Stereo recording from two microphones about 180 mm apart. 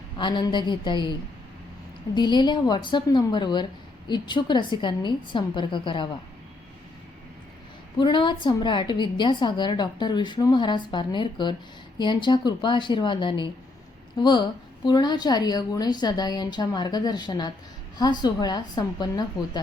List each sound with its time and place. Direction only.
0.2 s a woman's voice: 25° left (ahead or behind)
2.1 s a woman's voice: 25° left (ahead or behind)
7.9 s a woman's voice: 25° left (ahead or behind)